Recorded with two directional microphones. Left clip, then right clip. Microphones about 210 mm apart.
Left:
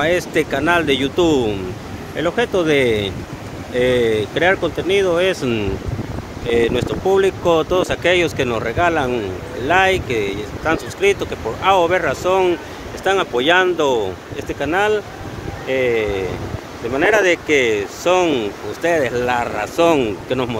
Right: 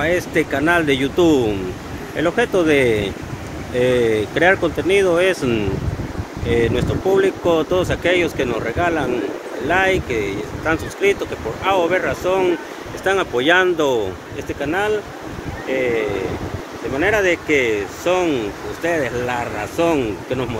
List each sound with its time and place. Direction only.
0.0 s speech: 15° left (ahead or behind); by 5.7 s centre (ahead or behind)
6.4 s speech: 10° left (ahead or behind)
14.6 s speech: 20° left (ahead or behind)